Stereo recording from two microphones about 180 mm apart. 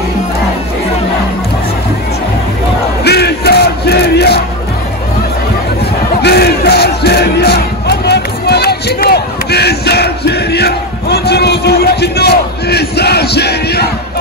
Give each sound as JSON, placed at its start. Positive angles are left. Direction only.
{"t": 3.0, "sound": "battle cry", "side_deg": 65}
{"t": 6.2, "sound": "battle cry", "side_deg": 65}